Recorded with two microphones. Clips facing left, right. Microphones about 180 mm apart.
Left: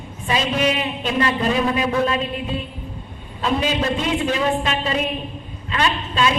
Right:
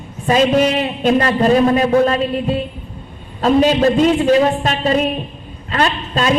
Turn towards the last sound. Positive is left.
turn(degrees=-40)  # may be behind; listen again after turning